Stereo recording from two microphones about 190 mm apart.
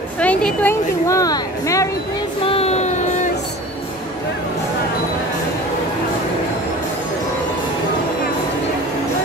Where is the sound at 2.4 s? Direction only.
30° left (ahead or behind).